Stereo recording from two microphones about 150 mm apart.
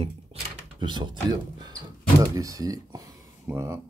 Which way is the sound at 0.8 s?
30° right (ahead or behind).